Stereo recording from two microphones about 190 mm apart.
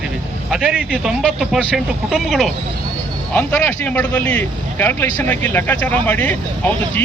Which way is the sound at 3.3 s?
10° left (ahead or behind).